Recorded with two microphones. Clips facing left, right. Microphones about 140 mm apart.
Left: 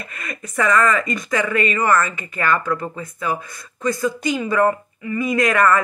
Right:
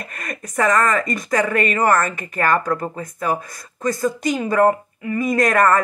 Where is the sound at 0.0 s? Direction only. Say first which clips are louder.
Right 1 dB; 45° right (ahead or behind).